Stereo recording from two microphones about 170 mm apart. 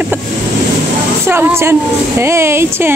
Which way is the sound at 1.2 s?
15° right (ahead or behind).